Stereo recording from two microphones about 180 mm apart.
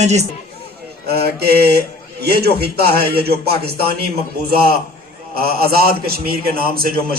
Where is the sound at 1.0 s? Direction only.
60° right (ahead or behind).